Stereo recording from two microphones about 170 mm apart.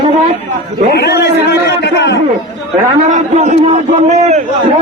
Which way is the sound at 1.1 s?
80° left.